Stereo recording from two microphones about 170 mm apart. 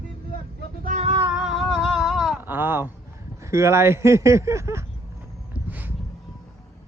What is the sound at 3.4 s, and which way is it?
Speech, 15° right (ahead or behind).